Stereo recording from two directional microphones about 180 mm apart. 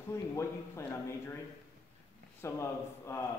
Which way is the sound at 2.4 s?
15° left (ahead or behind).